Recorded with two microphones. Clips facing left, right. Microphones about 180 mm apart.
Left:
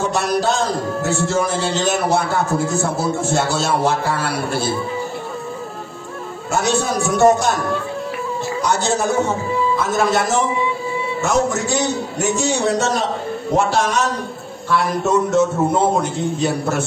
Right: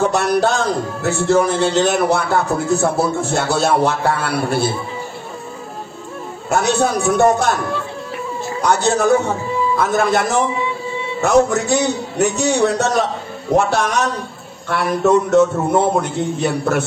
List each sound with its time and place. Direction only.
0.0 s speech: 60° right (ahead or behind)
6.5 s speech: 60° right (ahead or behind)
8.6 s speech: 60° right (ahead or behind)